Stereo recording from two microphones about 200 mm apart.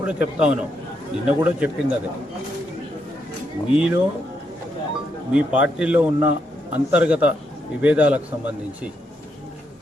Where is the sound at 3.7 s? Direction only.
5° right (ahead or behind).